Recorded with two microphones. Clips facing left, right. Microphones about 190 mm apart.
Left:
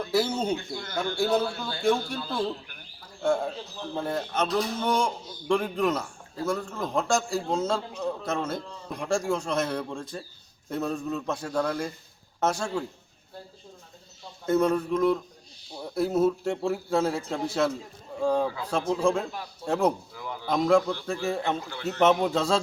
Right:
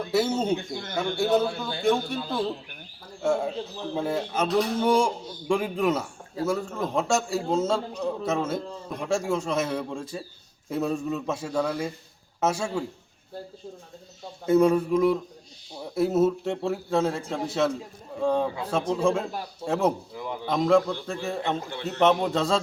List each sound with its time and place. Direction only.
0.1 s a man's voice: centre (ahead or behind)
0.4 s speech: 20° right (ahead or behind)
1.2 s a man's voice: centre (ahead or behind)
3.2 s a man's voice: 5° right (ahead or behind)
14.4 s a man's voice: 10° right (ahead or behind)
18.4 s speech: 25° right (ahead or behind)
18.7 s a man's voice: centre (ahead or behind)
20.1 s speech: 20° right (ahead or behind)
20.5 s a man's voice: centre (ahead or behind)